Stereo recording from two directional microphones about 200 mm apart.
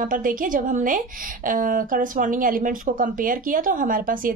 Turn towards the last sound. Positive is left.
turn(degrees=-45)  # may be behind; listen again after turning